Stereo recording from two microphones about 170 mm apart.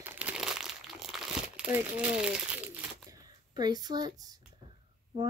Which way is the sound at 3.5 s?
25° right (ahead or behind).